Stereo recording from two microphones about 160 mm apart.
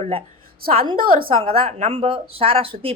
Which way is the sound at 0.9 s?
65° right (ahead or behind).